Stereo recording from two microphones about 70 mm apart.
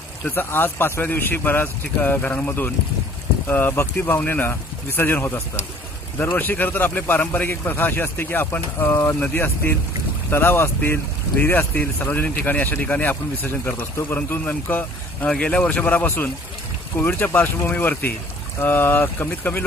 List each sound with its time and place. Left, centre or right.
0.2 s speech: left
15.2 s speech: centre